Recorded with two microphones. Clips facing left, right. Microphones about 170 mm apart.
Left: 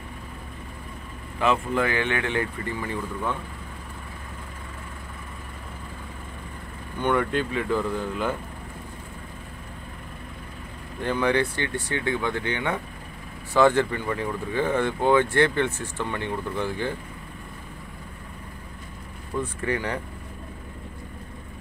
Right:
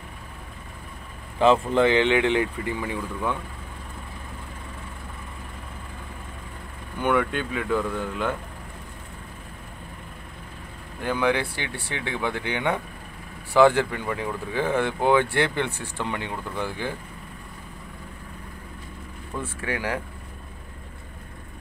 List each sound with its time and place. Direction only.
1.4 s speech: 30° right (ahead or behind); by 3.3 s 15° right (ahead or behind)
7.0 s speech: 5° right (ahead or behind)
11.0 s speech: 5° right (ahead or behind)
19.4 s speech: 5° right (ahead or behind)